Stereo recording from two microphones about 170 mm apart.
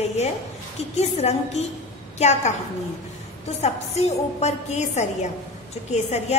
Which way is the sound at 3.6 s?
40° left (ahead or behind).